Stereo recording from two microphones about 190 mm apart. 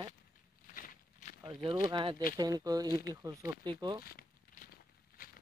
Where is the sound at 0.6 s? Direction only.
45° left (ahead or behind).